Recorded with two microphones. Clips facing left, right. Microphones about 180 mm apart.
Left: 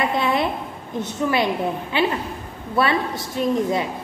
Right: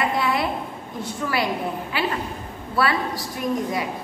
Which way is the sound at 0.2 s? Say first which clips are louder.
Left 2 dB; 20° left (ahead or behind).